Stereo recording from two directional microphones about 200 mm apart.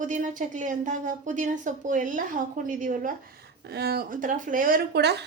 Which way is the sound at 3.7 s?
50° right (ahead or behind).